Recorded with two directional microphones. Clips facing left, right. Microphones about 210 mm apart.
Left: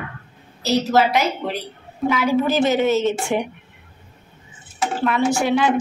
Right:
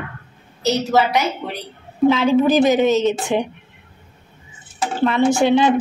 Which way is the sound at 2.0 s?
25° right (ahead or behind).